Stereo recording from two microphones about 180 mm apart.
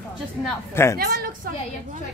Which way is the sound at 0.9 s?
55° right (ahead or behind).